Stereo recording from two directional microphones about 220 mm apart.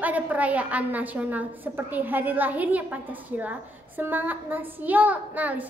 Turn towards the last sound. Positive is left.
turn(degrees=-5)  # may be behind; listen again after turning